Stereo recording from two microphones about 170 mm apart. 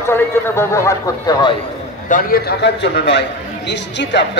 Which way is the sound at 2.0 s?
55° left (ahead or behind).